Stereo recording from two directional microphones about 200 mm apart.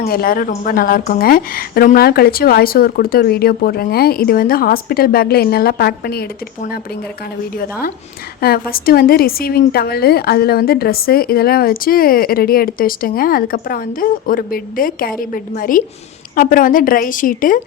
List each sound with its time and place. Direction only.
0.0 s a woman's voice: 50° left (ahead or behind)
7.6 s a woman's voice: 45° left (ahead or behind)